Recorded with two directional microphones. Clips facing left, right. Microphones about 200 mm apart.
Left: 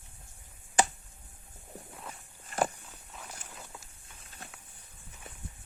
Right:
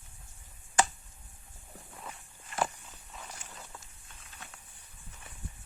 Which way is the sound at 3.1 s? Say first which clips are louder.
Even; 5° left (ahead or behind).